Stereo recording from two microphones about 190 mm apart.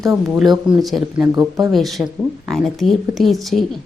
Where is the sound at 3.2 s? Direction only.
Centre (ahead or behind).